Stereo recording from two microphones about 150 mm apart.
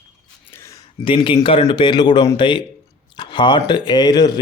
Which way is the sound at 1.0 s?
35° left (ahead or behind).